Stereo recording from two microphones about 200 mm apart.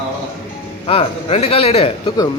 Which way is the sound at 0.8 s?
30° left (ahead or behind).